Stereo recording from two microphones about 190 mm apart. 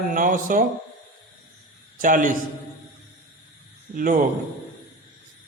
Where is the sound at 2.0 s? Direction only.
45° right (ahead or behind).